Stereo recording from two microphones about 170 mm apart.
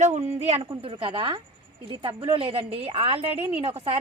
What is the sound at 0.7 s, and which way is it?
Speech, 30° right (ahead or behind).